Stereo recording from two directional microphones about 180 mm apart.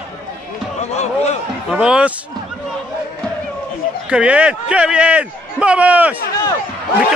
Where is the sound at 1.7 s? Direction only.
5° right (ahead or behind).